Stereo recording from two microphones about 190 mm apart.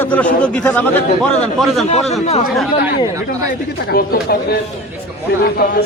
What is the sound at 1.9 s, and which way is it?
Speech, 35° left (ahead or behind).